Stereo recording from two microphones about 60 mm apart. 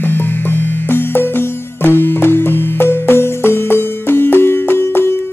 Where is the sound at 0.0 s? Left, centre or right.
Left.